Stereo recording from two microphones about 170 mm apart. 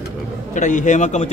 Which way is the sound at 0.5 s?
45° left (ahead or behind).